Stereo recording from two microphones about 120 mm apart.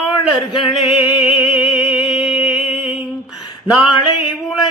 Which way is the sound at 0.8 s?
45° left (ahead or behind).